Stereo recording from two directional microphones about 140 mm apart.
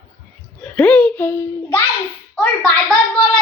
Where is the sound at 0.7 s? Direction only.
10° left (ahead or behind).